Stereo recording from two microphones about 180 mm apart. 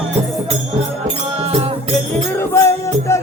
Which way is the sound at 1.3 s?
35° right (ahead or behind).